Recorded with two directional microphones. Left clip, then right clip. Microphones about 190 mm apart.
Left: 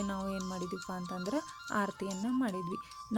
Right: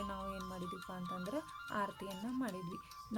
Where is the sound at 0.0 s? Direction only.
30° left (ahead or behind).